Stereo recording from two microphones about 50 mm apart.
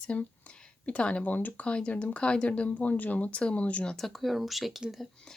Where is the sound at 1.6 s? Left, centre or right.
Left.